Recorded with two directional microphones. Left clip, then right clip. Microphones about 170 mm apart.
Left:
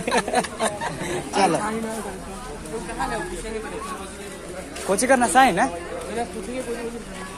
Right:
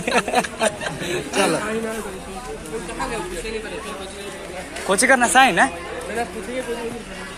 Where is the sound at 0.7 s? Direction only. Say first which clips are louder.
Right 3 dB; 40° left (ahead or behind).